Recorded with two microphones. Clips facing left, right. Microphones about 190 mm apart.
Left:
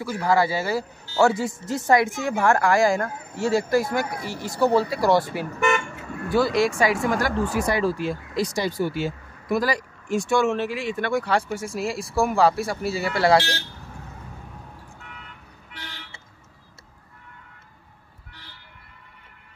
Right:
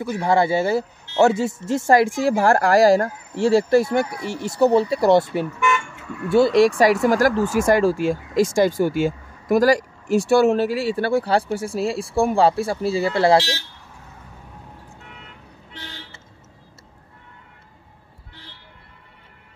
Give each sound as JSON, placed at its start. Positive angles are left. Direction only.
{"t": 0.0, "sound": "speech", "side_deg": -25}
{"t": 6.2, "sound": "speech", "side_deg": -25}
{"t": 6.8, "sound": "speech", "side_deg": -40}
{"t": 15.7, "sound": "toot", "side_deg": -25}